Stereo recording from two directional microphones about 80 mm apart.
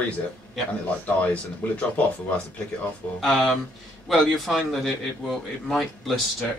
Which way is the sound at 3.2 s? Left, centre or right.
Centre.